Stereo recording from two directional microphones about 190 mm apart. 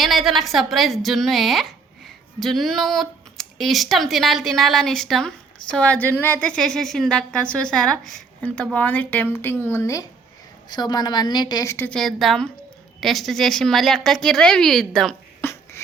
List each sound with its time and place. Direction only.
0.0 s a woman's voice: centre (ahead or behind)